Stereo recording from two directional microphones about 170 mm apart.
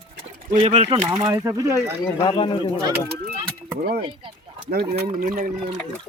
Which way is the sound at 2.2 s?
30° left (ahead or behind).